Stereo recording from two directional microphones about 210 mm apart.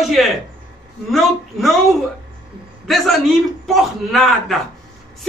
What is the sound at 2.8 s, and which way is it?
A man's voice, centre (ahead or behind).